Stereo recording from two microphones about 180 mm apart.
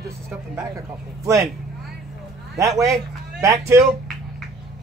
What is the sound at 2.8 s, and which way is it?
Speech, 15° right (ahead or behind).